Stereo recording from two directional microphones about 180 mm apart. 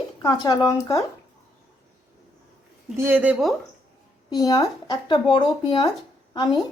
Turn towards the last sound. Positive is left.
turn(degrees=25)  # may be behind; listen again after turning